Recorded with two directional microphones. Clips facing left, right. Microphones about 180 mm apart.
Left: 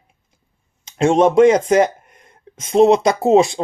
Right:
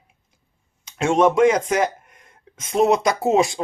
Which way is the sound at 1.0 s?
30° left (ahead or behind).